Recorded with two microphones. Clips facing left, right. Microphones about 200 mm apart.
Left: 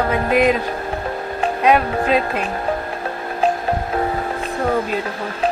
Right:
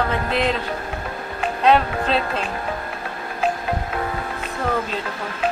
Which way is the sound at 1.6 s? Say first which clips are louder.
Left 1 dB; 10° left (ahead or behind).